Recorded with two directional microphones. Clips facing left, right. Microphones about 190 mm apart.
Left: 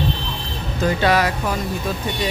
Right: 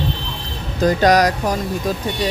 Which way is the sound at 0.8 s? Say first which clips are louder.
Right 4 dB; 40° right (ahead or behind).